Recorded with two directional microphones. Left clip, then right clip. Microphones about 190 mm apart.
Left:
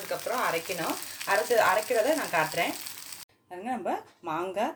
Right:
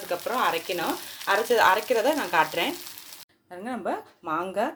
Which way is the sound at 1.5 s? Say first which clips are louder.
Right 3 dB; 35° right (ahead or behind).